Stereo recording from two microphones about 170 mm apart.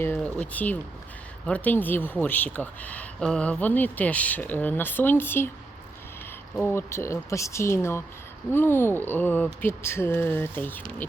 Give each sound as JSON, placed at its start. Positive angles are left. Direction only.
{"t": 0.0, "sound": "speech", "side_deg": 10}
{"t": 6.6, "sound": "speech", "side_deg": 15}